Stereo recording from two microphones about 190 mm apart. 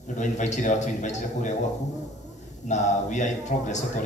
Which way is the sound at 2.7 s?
40° left (ahead or behind).